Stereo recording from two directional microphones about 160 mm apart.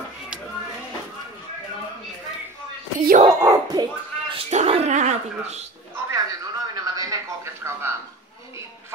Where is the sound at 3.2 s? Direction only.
25° right (ahead or behind).